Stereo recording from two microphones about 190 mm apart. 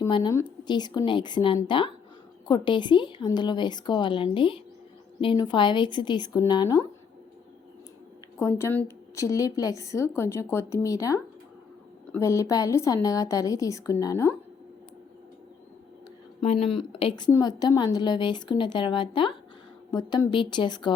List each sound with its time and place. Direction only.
0.1 s a woman's voice: 20° left (ahead or behind)
8.4 s a woman's voice: 15° left (ahead or behind)
16.4 s a woman's voice: 30° left (ahead or behind)